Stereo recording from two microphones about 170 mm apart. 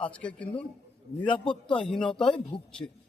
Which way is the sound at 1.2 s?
30° left (ahead or behind).